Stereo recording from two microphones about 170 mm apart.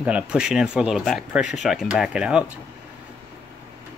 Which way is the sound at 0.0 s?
5° right (ahead or behind).